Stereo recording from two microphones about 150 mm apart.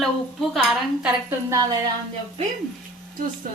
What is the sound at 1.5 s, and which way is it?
Speech, 25° right (ahead or behind).